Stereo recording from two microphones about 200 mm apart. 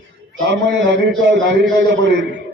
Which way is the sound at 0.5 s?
65° right (ahead or behind).